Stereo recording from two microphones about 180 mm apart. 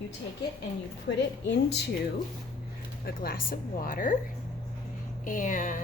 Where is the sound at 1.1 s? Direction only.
80° left.